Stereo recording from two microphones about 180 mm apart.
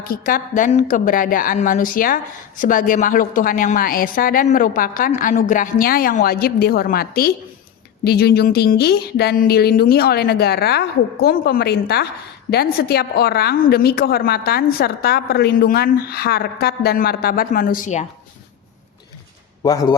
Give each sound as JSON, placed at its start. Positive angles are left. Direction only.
{"t": 0.1, "sound": "a woman's voice", "side_deg": 50}
{"t": 19.6, "sound": "a man's voice", "side_deg": 20}